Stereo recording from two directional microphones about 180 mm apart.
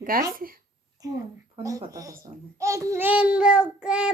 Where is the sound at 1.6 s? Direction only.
20° right (ahead or behind).